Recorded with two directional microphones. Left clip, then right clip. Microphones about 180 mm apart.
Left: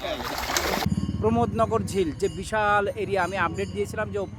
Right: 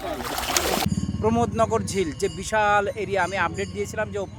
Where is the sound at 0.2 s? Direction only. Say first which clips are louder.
Right 2 dB; 35° right (ahead or behind).